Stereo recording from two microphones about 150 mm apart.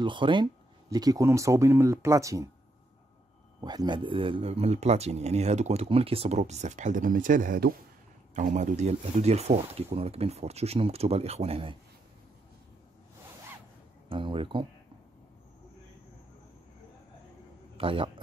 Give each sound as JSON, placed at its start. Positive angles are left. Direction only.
{"t": 0.0, "sound": "speech", "side_deg": -30}
{"t": 3.6, "sound": "speech", "side_deg": -30}
{"t": 8.4, "sound": "speech", "side_deg": -55}
{"t": 14.0, "sound": "speech", "side_deg": -35}
{"t": 17.7, "sound": "a man's voice", "side_deg": -35}